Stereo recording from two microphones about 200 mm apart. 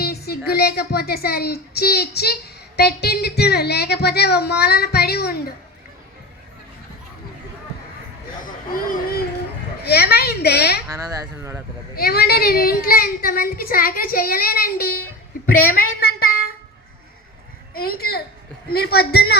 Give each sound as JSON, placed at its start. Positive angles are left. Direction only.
{"t": 0.0, "sound": "a child's voice", "side_deg": 50}
{"t": 8.4, "sound": "a sound", "side_deg": 45}
{"t": 9.8, "sound": "a child's voice", "side_deg": 50}
{"t": 10.9, "sound": "speech", "side_deg": -15}
{"t": 11.9, "sound": "a child's voice", "side_deg": 50}
{"t": 17.7, "sound": "a child's voice", "side_deg": 50}